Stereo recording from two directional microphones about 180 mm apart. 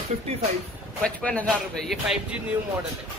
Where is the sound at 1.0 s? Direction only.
5° left (ahead or behind).